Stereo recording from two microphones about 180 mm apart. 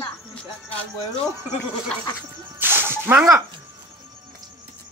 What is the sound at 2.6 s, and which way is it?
Music, 10° right (ahead or behind).